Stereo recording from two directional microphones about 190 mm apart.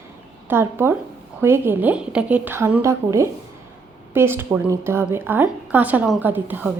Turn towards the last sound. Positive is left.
turn(degrees=-10)  # may be behind; listen again after turning